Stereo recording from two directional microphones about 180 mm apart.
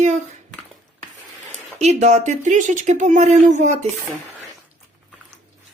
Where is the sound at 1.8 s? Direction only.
40° right (ahead or behind).